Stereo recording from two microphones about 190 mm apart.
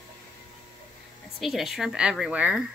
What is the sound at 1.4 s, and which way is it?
Speech, centre (ahead or behind).